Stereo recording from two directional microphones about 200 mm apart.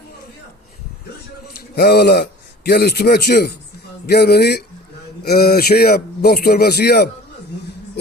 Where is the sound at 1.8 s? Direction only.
55° left (ahead or behind).